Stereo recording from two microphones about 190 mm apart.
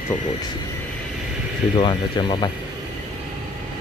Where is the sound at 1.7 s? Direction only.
25° left (ahead or behind).